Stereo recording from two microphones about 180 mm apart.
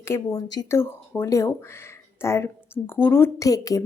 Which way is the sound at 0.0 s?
15° left (ahead or behind).